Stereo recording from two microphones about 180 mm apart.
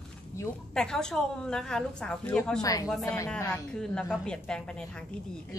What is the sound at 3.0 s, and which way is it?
A woman's voice, 15° left (ahead or behind).